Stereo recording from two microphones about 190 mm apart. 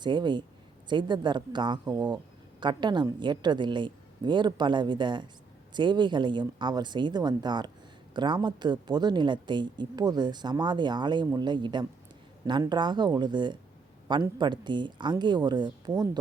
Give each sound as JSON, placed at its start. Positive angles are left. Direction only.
{"t": 0.0, "sound": "speech", "side_deg": -25}